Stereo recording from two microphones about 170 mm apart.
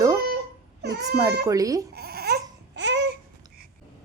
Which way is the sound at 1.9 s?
70° right (ahead or behind).